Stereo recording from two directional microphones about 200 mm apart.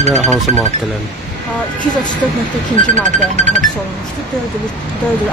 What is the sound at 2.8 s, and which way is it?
Speech, 40° right (ahead or behind).